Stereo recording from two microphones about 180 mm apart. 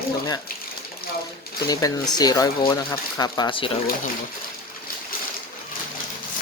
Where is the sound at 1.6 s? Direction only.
20° left (ahead or behind).